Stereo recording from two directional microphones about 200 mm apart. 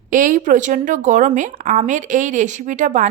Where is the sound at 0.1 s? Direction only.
40° right (ahead or behind).